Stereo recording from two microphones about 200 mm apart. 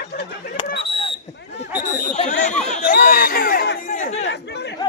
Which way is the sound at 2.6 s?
40° left (ahead or behind).